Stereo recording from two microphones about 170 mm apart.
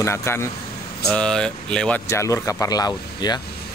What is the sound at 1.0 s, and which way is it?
Speech, 5° left (ahead or behind).